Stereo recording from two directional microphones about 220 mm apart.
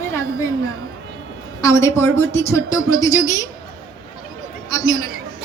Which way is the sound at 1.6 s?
15° left (ahead or behind).